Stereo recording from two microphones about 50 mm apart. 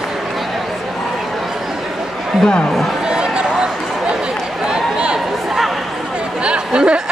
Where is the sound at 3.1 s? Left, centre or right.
Centre.